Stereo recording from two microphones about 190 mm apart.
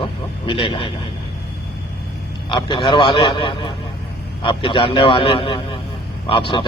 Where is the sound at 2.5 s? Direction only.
25° left (ahead or behind).